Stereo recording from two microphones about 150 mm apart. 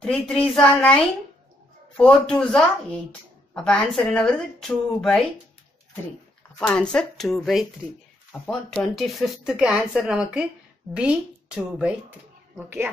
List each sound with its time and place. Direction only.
0.0 s speech: 5° left (ahead or behind)
6.6 s speech: 5° left (ahead or behind); by 12.9 s 15° right (ahead or behind)